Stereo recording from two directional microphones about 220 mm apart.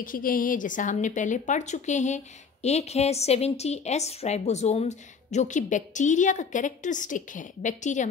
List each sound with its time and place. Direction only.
0.0 s a woman's voice: 40° left (ahead or behind)